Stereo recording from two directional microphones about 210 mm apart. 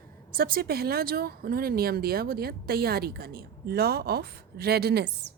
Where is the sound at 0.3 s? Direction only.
45° right (ahead or behind).